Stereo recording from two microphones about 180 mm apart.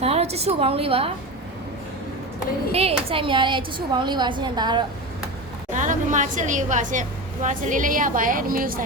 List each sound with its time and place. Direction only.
0.0 s a woman's voice: 35° right (ahead or behind)
2.7 s a woman's voice: 30° right (ahead or behind)
5.7 s a woman's voice: 45° right (ahead or behind)